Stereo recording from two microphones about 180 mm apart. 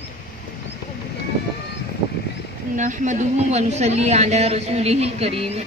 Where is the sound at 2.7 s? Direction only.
45° right (ahead or behind).